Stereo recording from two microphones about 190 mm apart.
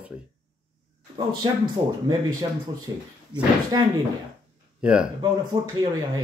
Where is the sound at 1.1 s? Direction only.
20° right (ahead or behind).